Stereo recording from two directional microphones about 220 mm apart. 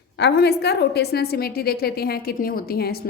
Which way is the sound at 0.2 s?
50° left (ahead or behind).